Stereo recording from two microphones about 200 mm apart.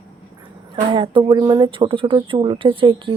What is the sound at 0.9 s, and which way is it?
Speech, 25° right (ahead or behind).